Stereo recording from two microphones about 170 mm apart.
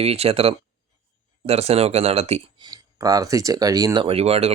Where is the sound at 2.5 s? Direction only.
25° right (ahead or behind).